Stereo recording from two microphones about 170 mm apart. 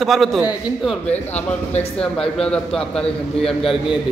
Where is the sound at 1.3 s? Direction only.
40° left (ahead or behind).